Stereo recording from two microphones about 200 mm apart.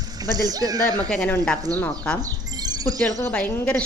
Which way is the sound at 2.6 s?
20° right (ahead or behind).